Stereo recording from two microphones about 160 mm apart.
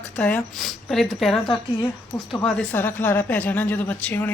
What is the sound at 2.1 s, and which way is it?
Speech, 20° left (ahead or behind).